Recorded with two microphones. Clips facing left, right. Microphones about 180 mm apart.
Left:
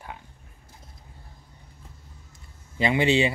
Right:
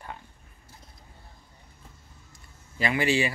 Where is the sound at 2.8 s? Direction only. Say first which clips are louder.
Left 4 dB; 20° left (ahead or behind).